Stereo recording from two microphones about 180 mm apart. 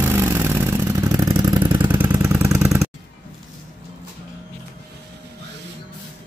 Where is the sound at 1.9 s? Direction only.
10° right (ahead or behind).